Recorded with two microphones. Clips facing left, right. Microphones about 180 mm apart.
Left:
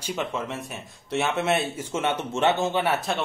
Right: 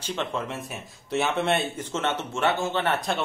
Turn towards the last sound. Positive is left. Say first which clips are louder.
# left 1 dB
turn(degrees=5)  # may be behind; listen again after turning